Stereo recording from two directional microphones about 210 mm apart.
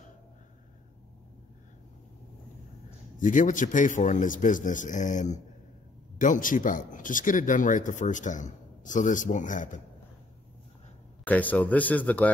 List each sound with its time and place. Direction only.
3.2 s speech: 40° left (ahead or behind)
11.2 s speech: 5° left (ahead or behind)